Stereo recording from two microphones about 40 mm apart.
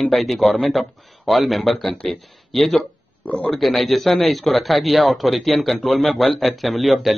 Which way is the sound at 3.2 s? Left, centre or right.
Left.